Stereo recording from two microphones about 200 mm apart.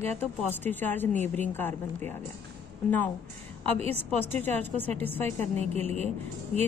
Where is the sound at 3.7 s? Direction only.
30° right (ahead or behind).